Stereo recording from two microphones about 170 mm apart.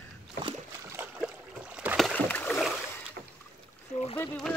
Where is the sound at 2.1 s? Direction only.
10° left (ahead or behind).